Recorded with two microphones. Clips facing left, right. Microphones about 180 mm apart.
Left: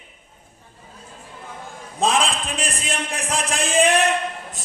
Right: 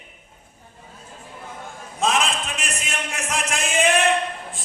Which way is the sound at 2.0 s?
30° left (ahead or behind).